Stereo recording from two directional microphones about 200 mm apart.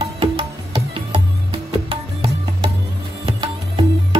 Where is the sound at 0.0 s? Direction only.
25° right (ahead or behind).